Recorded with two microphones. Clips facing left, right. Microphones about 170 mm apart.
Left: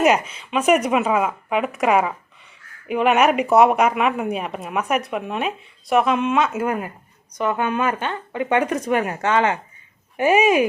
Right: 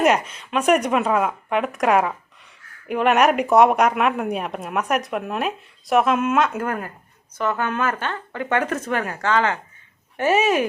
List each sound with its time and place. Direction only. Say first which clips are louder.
0.0 s a woman's voice: left 1 dB; centre (ahead or behind)